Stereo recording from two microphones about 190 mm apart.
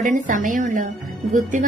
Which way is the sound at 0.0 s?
45° right (ahead or behind).